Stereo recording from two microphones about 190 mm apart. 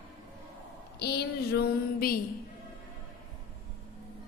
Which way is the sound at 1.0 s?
60° left (ahead or behind).